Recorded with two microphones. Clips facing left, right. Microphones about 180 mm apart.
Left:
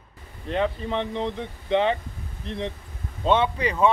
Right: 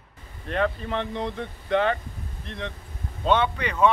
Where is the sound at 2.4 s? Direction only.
30° left (ahead or behind).